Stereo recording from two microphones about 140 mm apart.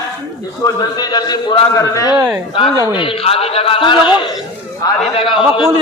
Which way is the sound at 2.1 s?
20° right (ahead or behind).